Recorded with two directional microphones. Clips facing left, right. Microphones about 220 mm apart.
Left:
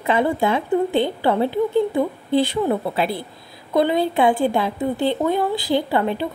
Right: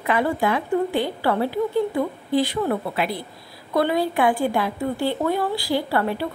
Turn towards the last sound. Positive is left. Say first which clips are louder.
# left 3 dB
turn(degrees=20)  # may be behind; listen again after turning